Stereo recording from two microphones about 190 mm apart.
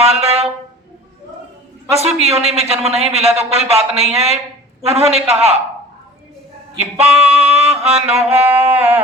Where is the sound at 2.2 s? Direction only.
35° right (ahead or behind).